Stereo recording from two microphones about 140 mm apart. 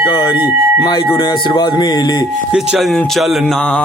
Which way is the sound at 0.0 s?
30° left (ahead or behind).